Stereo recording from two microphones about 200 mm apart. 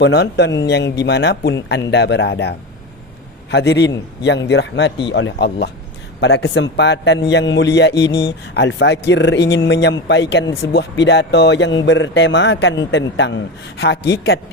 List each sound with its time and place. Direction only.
0.0 s a man's voice: 60° left (ahead or behind)